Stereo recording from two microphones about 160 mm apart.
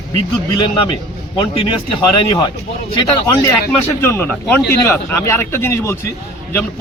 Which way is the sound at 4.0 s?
15° left (ahead or behind).